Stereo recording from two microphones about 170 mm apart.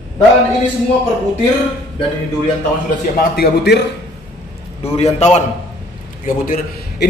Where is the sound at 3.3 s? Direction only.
70° left (ahead or behind).